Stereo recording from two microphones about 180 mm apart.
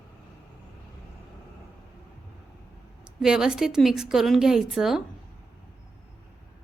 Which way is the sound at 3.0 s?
5° right (ahead or behind).